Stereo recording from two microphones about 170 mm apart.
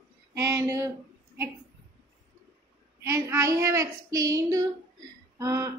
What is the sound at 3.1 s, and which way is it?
A woman's voice, 20° right (ahead or behind).